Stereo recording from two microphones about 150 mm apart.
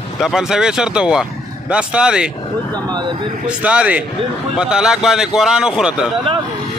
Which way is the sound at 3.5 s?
10° right (ahead or behind).